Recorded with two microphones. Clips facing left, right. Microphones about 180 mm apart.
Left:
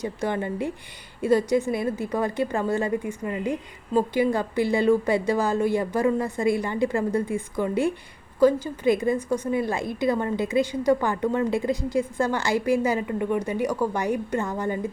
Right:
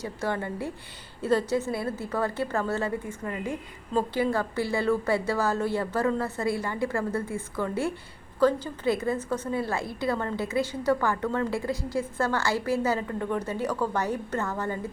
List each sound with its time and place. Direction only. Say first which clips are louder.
0.0 s a woman's voice: left 3 dB; 20° left (ahead or behind)